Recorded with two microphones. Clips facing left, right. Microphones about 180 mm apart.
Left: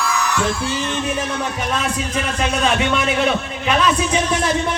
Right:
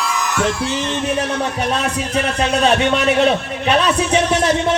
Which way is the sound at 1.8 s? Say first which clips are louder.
Right 3 dB; 35° right (ahead or behind).